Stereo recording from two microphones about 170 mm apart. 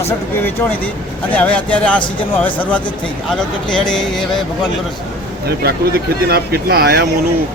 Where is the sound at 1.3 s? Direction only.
10° left (ahead or behind).